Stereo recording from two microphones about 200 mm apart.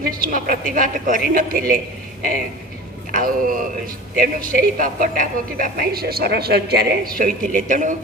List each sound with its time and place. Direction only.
0.1 s a man's voice: 45° right (ahead or behind)
3.1 s a man's voice: 45° right (ahead or behind)